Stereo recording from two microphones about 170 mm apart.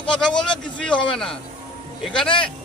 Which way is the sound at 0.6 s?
5° left (ahead or behind).